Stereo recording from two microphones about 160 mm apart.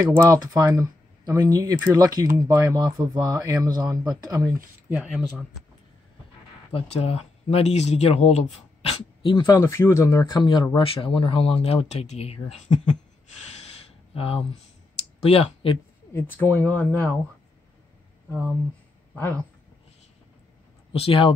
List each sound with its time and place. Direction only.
0.1 s speech: 20° right (ahead or behind)
4.8 s speech: 5° right (ahead or behind)
6.7 s speech: 40° left (ahead or behind)
9.6 s speech: 15° left (ahead or behind); by 12.8 s 40° left (ahead or behind)
14.1 s speech: 35° left (ahead or behind)
16.1 s speech: 15° left (ahead or behind)
19.1 s speech: 10° left (ahead or behind)
20.9 s speech: 35° left (ahead or behind)